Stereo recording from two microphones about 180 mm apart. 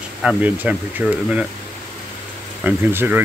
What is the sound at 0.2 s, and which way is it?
Speech, 5° right (ahead or behind).